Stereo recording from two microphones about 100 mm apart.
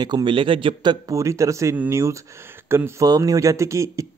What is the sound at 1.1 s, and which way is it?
Speech, 30° right (ahead or behind).